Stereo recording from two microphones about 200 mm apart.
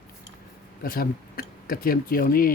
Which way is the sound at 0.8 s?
50° left (ahead or behind).